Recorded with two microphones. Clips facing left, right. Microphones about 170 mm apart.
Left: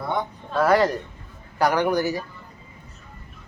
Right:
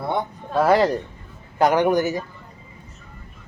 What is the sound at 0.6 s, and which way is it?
A man's voice, 25° right (ahead or behind).